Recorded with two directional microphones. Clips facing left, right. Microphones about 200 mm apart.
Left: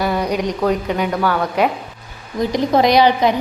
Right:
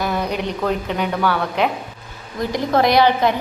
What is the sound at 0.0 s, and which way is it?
A woman's voice, 10° left (ahead or behind).